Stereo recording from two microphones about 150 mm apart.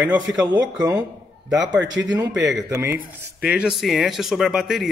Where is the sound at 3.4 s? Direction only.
5° right (ahead or behind).